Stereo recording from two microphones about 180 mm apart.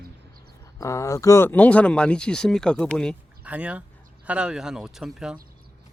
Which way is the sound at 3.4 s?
5° right (ahead or behind).